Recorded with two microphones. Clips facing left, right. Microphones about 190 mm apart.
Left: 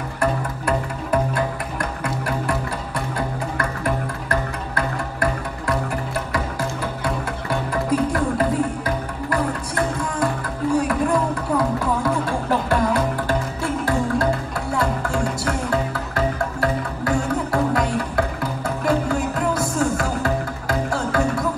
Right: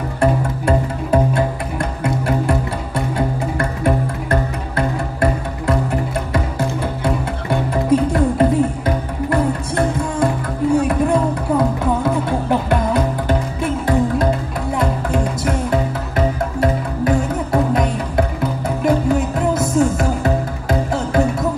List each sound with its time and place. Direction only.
0.2 s music: 25° right (ahead or behind)